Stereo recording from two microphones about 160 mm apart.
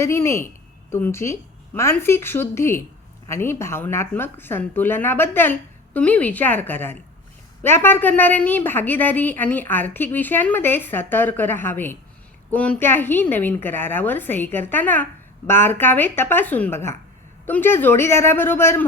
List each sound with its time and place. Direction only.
0.0 s a woman's voice: 15° left (ahead or behind)